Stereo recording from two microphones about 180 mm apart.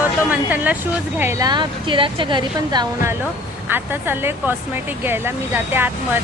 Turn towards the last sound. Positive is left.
turn(degrees=-10)  # may be behind; listen again after turning